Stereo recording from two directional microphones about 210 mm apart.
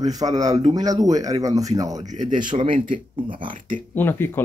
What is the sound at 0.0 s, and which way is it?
Speech, 20° right (ahead or behind).